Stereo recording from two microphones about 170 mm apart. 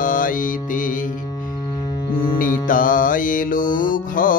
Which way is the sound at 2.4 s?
55° left (ahead or behind).